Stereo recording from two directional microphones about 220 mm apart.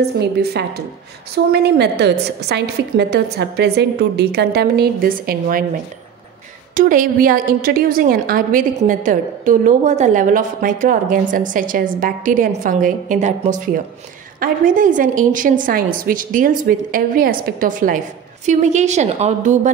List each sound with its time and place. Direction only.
0.2 s a woman's voice: 50° right (ahead or behind)
6.7 s a woman's voice: 35° right (ahead or behind)